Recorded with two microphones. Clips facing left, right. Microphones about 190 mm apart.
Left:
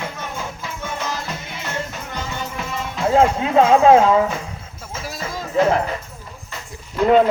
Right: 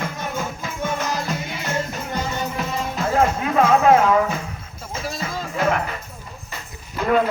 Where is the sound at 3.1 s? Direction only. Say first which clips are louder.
Left 4 dB; 25° left (ahead or behind).